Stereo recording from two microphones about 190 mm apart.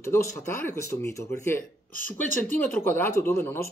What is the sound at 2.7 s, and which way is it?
Speech, 10° left (ahead or behind).